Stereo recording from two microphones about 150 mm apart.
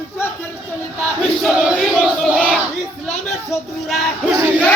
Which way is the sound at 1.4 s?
5° right (ahead or behind).